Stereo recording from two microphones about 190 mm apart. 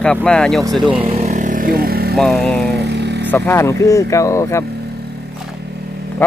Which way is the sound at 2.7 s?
60° right (ahead or behind).